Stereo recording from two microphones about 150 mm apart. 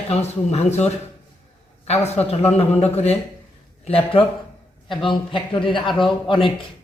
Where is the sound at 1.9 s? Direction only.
45° left (ahead or behind).